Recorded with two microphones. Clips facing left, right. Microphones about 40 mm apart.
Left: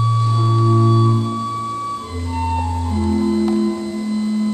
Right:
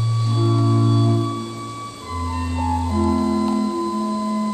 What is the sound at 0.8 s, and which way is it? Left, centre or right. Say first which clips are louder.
Music: left 3 dB; centre.